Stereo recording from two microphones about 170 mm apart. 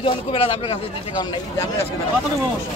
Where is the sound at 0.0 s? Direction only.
35° left (ahead or behind).